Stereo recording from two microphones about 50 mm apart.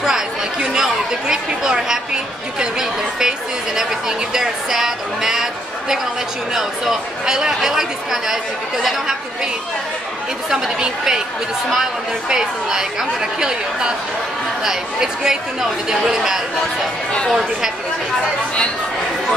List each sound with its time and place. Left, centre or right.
0.0 s speech: centre
10.5 s speech: centre
12.3 s speech: centre